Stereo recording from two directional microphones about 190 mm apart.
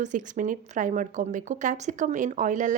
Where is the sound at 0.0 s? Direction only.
40° right (ahead or behind).